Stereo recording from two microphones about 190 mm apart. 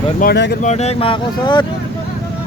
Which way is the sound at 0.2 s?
60° left (ahead or behind).